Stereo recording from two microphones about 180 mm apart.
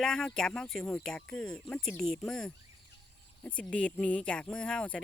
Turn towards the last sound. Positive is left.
turn(degrees=5)  # may be behind; listen again after turning